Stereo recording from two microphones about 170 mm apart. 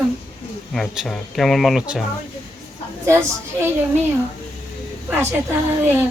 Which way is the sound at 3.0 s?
15° right (ahead or behind).